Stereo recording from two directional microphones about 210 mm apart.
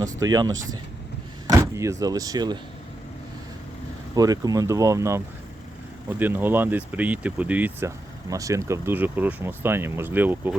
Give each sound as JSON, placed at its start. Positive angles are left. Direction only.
{"t": 0.0, "sound": "speech", "side_deg": -15}
{"t": 4.1, "sound": "speech", "side_deg": -15}